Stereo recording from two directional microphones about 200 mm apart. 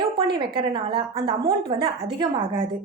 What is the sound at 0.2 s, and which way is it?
A woman's voice, 25° right (ahead or behind).